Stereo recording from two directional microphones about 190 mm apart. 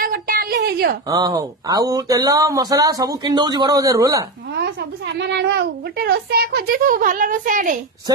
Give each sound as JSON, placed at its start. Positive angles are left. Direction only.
{"t": 0.0, "sound": "a sound", "side_deg": -50}
{"t": 1.0, "sound": "speech", "side_deg": -20}
{"t": 4.6, "sound": "a child's voice", "side_deg": -60}